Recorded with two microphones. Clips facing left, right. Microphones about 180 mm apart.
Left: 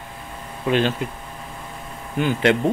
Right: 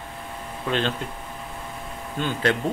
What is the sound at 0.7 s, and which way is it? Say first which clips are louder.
Speech: left 5 dB; 10° left (ahead or behind).